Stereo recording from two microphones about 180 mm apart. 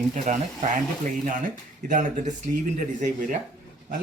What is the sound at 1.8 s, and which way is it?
A man's voice, 45° right (ahead or behind).